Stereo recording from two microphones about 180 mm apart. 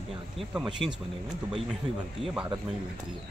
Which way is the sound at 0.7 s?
25° right (ahead or behind).